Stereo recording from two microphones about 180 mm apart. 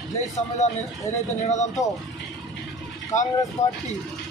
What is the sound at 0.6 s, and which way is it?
Speech, 40° left (ahead or behind).